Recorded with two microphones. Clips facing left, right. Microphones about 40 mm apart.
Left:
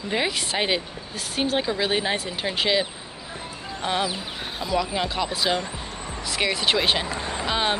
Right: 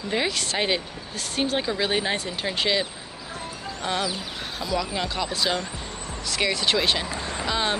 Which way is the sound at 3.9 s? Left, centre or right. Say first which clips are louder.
Left 2 dB; centre.